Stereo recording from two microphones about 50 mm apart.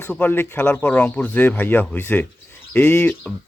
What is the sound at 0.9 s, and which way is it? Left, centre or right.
Speech, left.